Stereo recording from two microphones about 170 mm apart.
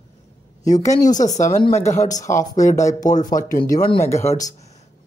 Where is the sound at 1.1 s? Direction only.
45° left (ahead or behind).